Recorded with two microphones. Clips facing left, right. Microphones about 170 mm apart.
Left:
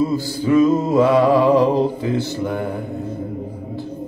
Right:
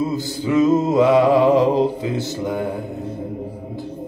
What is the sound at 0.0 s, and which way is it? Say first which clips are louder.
Music: left 3 dB; 20° right (ahead or behind).